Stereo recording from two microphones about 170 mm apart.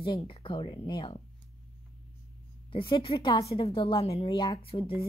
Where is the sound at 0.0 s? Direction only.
30° left (ahead or behind).